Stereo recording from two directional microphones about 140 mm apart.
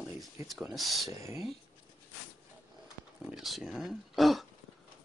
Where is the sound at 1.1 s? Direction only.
20° right (ahead or behind).